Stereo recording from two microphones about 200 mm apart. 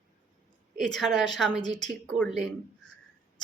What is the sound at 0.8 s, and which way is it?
Speech, centre (ahead or behind).